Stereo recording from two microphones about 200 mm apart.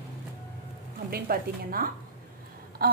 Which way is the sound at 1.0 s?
45° right (ahead or behind).